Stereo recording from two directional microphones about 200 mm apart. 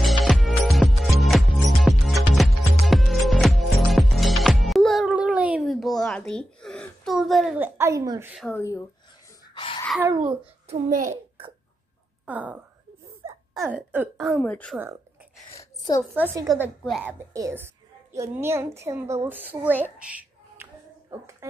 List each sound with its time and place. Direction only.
0.0 s music: centre (ahead or behind); by 8.3 s 15° right (ahead or behind)
8.5 s speech: 10° left (ahead or behind)
9.5 s a sound: 25° left (ahead or behind)
10.7 s a child's voice: 40° right (ahead or behind)
12.3 s a sound: 10° right (ahead or behind)
13.6 s speech: 10° right (ahead or behind); by 14.8 s 5° left (ahead or behind)
15.5 s a sound: 20° left (ahead or behind)
16.4 s a woman's voice: 10° right (ahead or behind)
17.3 s a woman's voice: 15° right (ahead or behind)